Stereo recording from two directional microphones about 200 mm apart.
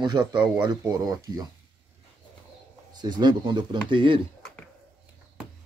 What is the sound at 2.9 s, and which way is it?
Speech, 20° right (ahead or behind).